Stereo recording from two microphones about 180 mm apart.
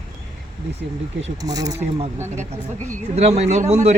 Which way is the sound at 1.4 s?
20° right (ahead or behind).